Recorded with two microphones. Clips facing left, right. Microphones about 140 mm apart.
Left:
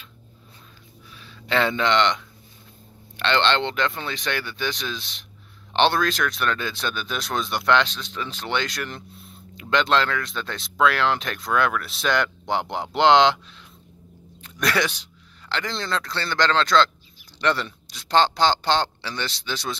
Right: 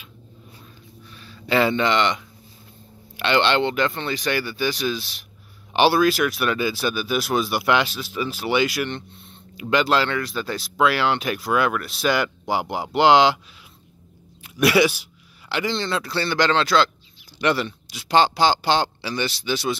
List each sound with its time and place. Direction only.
1.1 s speech: centre (ahead or behind)
14.4 s speech: 10° right (ahead or behind)